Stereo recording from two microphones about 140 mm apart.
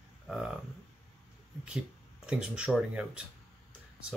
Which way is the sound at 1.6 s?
5° right (ahead or behind).